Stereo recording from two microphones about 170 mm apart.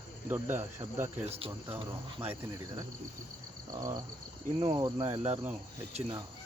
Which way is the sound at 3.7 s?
20° right (ahead or behind).